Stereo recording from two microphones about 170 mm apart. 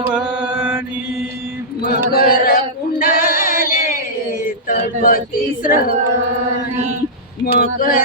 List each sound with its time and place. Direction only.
0.0 s mantra: 5° right (ahead or behind)
1.8 s chant: 60° left (ahead or behind)
3.0 s a sound: 60° left (ahead or behind)
4.7 s speech: 55° left (ahead or behind)
7.4 s speech: 60° left (ahead or behind)